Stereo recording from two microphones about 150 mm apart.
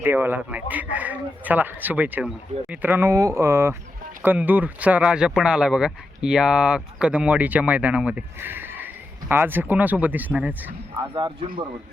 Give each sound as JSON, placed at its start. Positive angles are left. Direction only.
{"t": 0.0, "sound": "speech", "side_deg": -15}
{"t": 11.2, "sound": "speech", "side_deg": -35}